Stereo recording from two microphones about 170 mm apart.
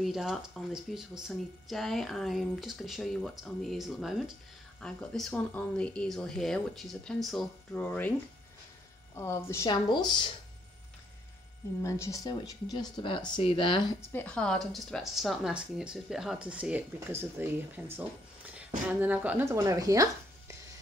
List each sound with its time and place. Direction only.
0.0 s speech: centre (ahead or behind)
9.1 s speech: 15° left (ahead or behind)
11.8 s speech: 20° left (ahead or behind)
14.1 s speech: 5° left (ahead or behind); by 17.8 s 15° right (ahead or behind)
18.9 s speech: 10° right (ahead or behind)